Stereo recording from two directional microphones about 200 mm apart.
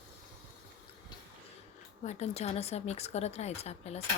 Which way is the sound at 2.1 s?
35° left (ahead or behind).